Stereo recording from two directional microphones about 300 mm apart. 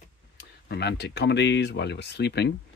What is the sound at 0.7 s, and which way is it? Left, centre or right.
Speech, left.